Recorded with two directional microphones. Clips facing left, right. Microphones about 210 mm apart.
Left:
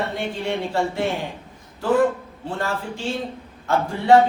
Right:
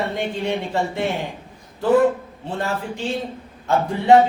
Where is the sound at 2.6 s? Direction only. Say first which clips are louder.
Right 2 dB; 20° right (ahead or behind).